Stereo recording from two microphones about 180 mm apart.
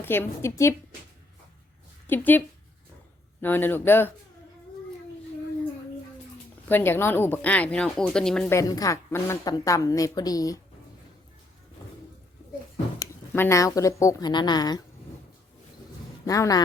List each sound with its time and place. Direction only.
0.0 s speech: 10° left (ahead or behind)
2.0 s speech: 10° left (ahead or behind)
3.4 s speech: 10° left (ahead or behind)
6.7 s speech: 10° left (ahead or behind)
8.5 s a woman's voice: 20° left (ahead or behind)
13.0 s speech: 15° left (ahead or behind)
16.2 s a woman's voice: 20° left (ahead or behind)